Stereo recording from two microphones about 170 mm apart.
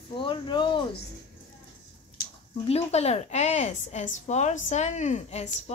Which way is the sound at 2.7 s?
40° left (ahead or behind).